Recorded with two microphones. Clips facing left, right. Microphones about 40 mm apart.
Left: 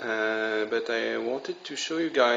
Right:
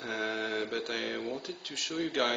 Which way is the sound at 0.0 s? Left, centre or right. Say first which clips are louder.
Left 7 dB; centre.